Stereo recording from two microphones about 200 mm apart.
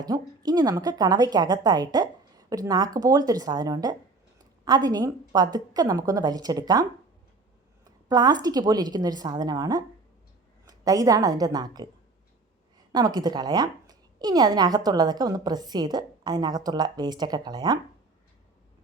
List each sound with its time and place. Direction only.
0.0 s a woman's voice: 20° right (ahead or behind)
8.0 s a woman's voice: 20° right (ahead or behind)
12.9 s a woman's voice: 20° right (ahead or behind)